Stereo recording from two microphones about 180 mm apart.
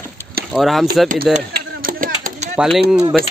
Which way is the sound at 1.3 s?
50° right (ahead or behind).